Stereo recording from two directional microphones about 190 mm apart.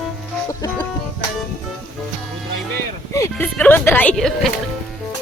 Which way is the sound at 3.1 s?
15° left (ahead or behind).